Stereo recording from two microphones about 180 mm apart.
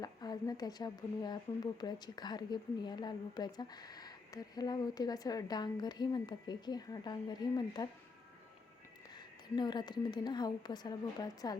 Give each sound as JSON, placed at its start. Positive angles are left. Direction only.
{"t": 0.0, "sound": "a woman's voice", "side_deg": 20}
{"t": 9.1, "sound": "a woman's voice", "side_deg": 25}